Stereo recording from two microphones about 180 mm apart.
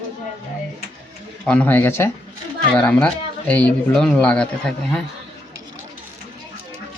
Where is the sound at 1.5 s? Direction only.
10° left (ahead or behind).